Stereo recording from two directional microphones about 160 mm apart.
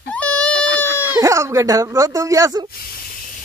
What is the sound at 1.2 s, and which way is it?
Speech, 20° right (ahead or behind).